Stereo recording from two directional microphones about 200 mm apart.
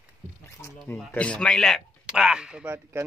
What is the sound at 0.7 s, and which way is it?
Speech, centre (ahead or behind).